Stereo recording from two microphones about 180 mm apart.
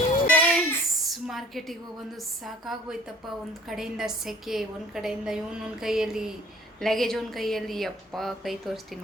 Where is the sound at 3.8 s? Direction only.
Centre (ahead or behind).